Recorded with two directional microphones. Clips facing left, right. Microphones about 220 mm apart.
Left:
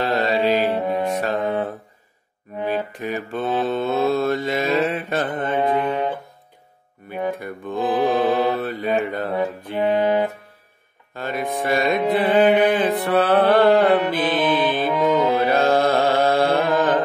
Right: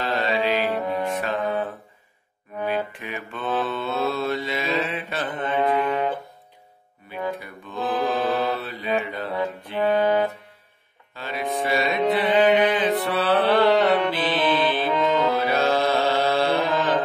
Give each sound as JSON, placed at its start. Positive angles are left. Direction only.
{"t": 0.0, "sound": "music", "side_deg": 40}
{"t": 0.7, "sound": "music", "side_deg": 20}
{"t": 1.1, "sound": "music", "side_deg": 35}
{"t": 3.6, "sound": "mantra", "side_deg": 45}
{"t": 5.6, "sound": "music", "side_deg": 20}
{"t": 7.3, "sound": "music", "side_deg": 50}
{"t": 7.9, "sound": "mantra", "side_deg": 15}
{"t": 8.5, "sound": "mantra", "side_deg": 50}
{"t": 9.8, "sound": "music", "side_deg": 20}
{"t": 11.1, "sound": "mantra", "side_deg": 50}
{"t": 14.3, "sound": "music", "side_deg": 10}
{"t": 15.4, "sound": "music", "side_deg": 50}